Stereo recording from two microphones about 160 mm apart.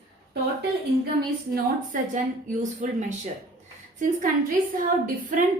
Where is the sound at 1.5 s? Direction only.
55° right (ahead or behind).